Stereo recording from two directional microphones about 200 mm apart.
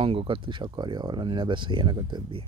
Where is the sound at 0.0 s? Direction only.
30° right (ahead or behind).